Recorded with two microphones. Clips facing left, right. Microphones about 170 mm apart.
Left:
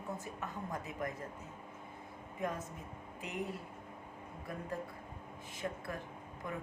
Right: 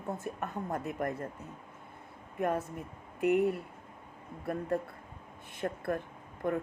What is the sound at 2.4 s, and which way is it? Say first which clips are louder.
A woman's voice: right 8 dB; 60° right (ahead or behind).